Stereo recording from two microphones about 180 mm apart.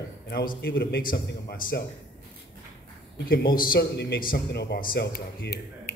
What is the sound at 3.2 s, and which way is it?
A man's voice, 55° left (ahead or behind).